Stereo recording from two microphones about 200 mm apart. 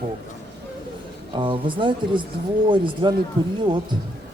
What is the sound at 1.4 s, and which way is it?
Speech, 25° right (ahead or behind).